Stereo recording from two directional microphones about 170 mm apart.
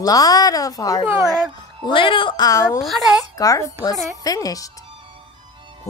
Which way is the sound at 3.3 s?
20° left (ahead or behind).